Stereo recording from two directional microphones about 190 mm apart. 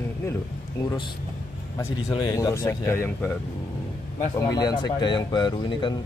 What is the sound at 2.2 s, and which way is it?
A man's voice, 20° left (ahead or behind).